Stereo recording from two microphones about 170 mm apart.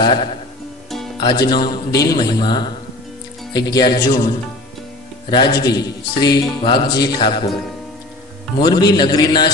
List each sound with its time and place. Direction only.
0.0 s a man's voice: 25° left (ahead or behind)
0.8 s music: centre (ahead or behind)
1.2 s a man's voice: 25° left (ahead or behind)
5.3 s a man's voice: 25° left (ahead or behind)
8.5 s a man's voice: 25° left (ahead or behind)